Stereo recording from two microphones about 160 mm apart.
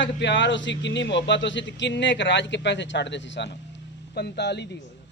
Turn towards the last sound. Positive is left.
turn(degrees=90)